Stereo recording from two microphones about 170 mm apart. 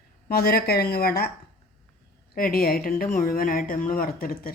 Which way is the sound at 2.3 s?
60° left (ahead or behind).